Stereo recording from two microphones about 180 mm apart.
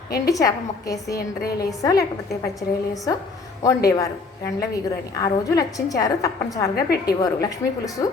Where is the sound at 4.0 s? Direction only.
20° left (ahead or behind).